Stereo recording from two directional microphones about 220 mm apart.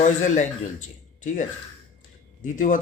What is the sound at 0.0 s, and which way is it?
Speech, 35° left (ahead or behind).